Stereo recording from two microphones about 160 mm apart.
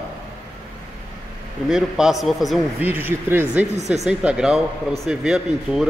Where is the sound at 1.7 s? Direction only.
5° right (ahead or behind).